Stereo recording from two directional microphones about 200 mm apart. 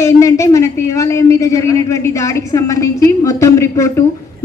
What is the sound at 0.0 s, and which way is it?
A woman's voice, 15° left (ahead or behind).